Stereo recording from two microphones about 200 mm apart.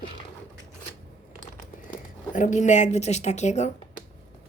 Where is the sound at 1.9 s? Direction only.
40° left (ahead or behind).